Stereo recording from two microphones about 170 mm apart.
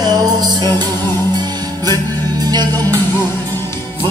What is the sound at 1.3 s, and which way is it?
Music, 25° right (ahead or behind).